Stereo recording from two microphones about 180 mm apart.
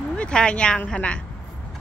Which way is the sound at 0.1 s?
5° left (ahead or behind).